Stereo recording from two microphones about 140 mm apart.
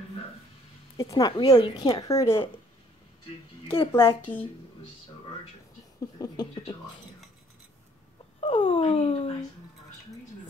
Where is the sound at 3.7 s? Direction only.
35° left (ahead or behind).